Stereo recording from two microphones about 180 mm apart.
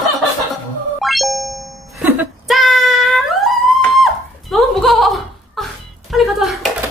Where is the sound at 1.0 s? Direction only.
Centre (ahead or behind).